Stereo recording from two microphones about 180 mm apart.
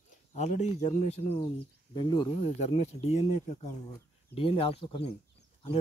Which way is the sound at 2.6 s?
35° left (ahead or behind).